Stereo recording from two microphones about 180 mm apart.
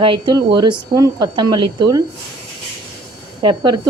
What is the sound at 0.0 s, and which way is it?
Speech, 25° right (ahead or behind).